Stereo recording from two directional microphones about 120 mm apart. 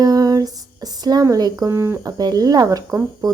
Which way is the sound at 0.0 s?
30° right (ahead or behind).